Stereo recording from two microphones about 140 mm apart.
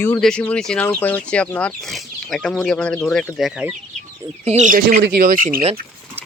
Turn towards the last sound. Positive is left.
turn(degrees=-80)